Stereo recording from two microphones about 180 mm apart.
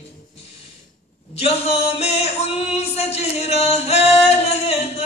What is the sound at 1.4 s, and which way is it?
Male singing, 35° left (ahead or behind).